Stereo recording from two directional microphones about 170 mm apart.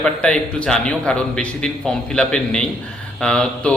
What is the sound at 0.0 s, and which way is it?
A man's voice, 5° left (ahead or behind).